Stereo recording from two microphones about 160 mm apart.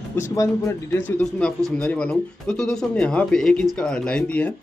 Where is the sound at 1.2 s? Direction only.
5° left (ahead or behind).